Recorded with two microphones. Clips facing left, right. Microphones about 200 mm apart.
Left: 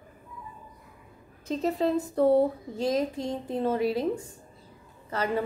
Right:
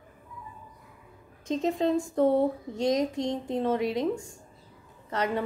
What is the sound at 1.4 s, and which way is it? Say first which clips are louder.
Speech: right 1 dB; 5° left (ahead or behind).